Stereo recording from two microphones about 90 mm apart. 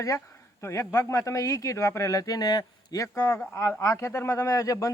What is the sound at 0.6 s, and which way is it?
A man's voice, 35° left (ahead or behind).